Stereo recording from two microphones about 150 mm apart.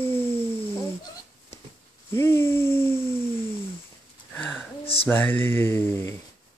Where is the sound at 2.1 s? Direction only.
15° left (ahead or behind).